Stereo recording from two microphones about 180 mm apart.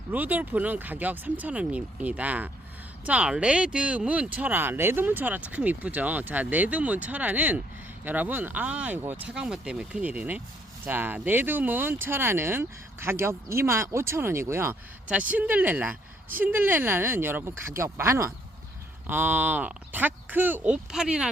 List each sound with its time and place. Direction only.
0.1 s speech: 10° right (ahead or behind)